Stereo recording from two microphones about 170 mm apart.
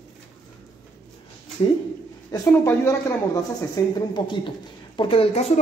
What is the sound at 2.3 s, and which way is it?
A woman's voice, 15° left (ahead or behind).